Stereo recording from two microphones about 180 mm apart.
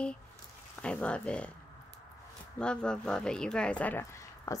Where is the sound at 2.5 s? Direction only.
5° left (ahead or behind).